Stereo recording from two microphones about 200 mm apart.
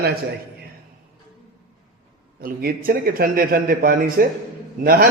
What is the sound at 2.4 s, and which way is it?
A man's voice, 45° right (ahead or behind).